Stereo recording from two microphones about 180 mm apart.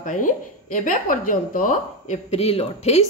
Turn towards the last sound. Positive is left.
turn(degrees=35)  # may be behind; listen again after turning